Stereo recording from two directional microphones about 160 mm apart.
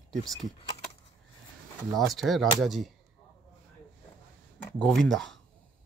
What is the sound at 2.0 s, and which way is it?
Speech, centre (ahead or behind).